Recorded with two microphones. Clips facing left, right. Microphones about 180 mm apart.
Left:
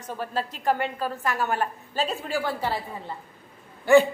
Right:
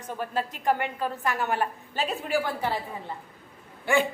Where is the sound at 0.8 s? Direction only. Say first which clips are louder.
Left 1 dB; 15° right (ahead or behind).